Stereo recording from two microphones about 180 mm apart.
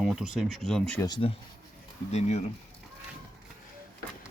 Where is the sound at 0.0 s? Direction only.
Centre (ahead or behind).